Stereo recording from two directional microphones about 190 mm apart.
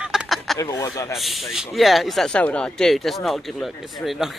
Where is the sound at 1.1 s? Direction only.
Centre (ahead or behind).